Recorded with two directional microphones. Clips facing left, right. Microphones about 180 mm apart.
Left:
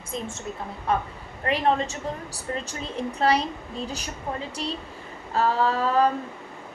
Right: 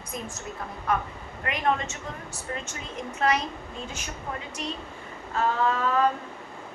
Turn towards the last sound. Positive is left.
turn(degrees=35)  # may be behind; listen again after turning